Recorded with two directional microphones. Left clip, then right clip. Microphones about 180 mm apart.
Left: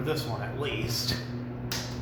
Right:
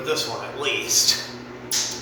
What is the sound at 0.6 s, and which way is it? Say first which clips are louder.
Speech: right 12 dB; 5° left (ahead or behind).